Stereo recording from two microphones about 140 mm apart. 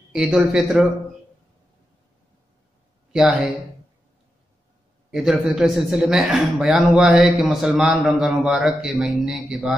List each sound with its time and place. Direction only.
0.1 s a man's voice: 5° right (ahead or behind)
3.1 s a man's voice: 5° right (ahead or behind)
5.1 s a man's voice: 5° right (ahead or behind)